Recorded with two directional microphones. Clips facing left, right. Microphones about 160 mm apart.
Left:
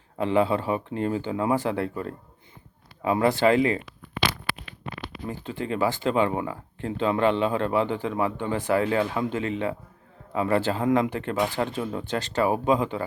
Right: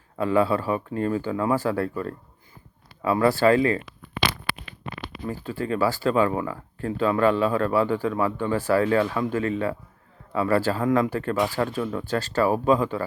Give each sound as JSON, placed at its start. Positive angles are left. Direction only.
{"t": 0.2, "sound": "speech", "side_deg": 20}
{"t": 5.3, "sound": "speech", "side_deg": 20}